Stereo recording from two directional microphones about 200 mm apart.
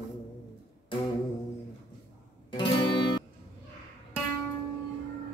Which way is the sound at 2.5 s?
25° left (ahead or behind).